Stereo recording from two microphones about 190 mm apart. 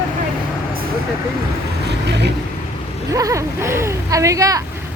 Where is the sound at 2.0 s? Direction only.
65° right (ahead or behind).